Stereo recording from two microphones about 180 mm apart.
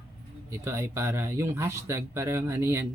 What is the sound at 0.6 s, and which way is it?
Speech, 15° right (ahead or behind).